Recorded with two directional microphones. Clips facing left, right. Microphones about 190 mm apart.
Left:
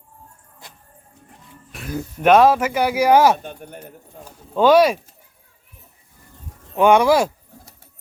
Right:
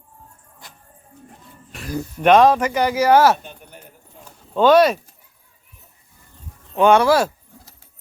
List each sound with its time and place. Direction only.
1.7 s speech: centre (ahead or behind)
3.3 s speech: 50° left (ahead or behind)
4.5 s speech: 10° left (ahead or behind)
6.7 s speech: 10° left (ahead or behind)